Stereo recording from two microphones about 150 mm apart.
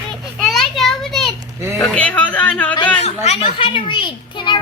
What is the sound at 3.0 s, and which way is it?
A child's voice, 45° left (ahead or behind).